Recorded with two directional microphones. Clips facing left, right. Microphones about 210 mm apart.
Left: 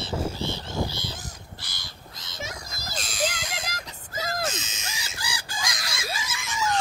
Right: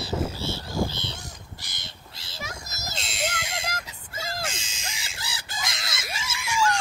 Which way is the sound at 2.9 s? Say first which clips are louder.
Left 2 dB; 25° right (ahead or behind).